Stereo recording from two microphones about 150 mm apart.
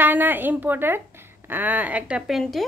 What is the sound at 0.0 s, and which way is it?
A woman's voice, 10° right (ahead or behind).